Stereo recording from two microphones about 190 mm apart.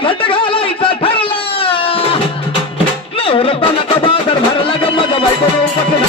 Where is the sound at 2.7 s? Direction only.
30° left (ahead or behind).